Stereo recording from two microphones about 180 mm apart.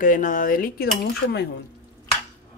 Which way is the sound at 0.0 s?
50° left (ahead or behind).